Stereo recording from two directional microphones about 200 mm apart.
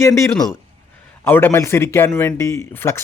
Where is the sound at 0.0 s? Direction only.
15° left (ahead or behind).